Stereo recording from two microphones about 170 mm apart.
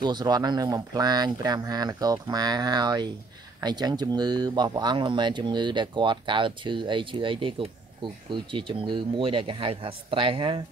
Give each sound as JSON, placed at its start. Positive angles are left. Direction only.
{"t": 0.0, "sound": "speech", "side_deg": -25}